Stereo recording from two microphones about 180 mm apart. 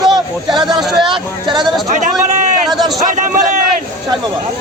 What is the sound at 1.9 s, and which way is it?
Speech, 45° right (ahead or behind).